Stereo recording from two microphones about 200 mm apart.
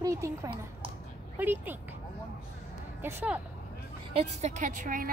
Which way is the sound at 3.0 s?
10° right (ahead or behind).